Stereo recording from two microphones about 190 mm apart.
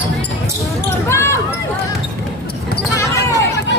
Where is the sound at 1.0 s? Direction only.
15° left (ahead or behind).